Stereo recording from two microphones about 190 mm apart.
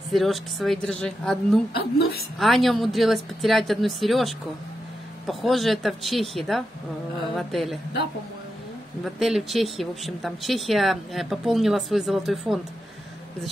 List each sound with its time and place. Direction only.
0.1 s speech: centre (ahead or behind)
1.7 s a woman's voice: 55° left (ahead or behind)
2.3 s speech: centre (ahead or behind)
9.0 s speech: centre (ahead or behind)